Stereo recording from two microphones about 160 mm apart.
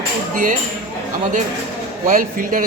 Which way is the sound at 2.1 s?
60° right (ahead or behind).